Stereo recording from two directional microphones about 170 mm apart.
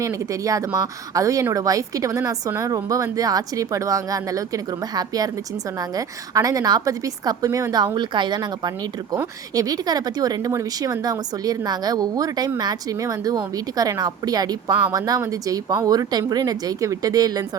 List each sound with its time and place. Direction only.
0.0 s speech: 20° right (ahead or behind)